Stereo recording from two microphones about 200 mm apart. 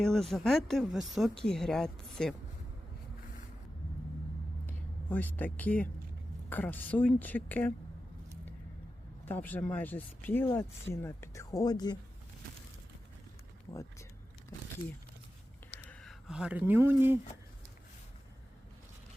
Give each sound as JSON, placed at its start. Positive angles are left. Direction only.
{"t": 0.0, "sound": "speech", "side_deg": 0}
{"t": 5.5, "sound": "speech", "side_deg": 10}
{"t": 9.2, "sound": "speech", "side_deg": 10}
{"t": 15.9, "sound": "speech", "side_deg": 0}